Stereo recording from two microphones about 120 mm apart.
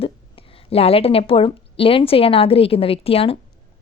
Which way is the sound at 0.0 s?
50° left (ahead or behind).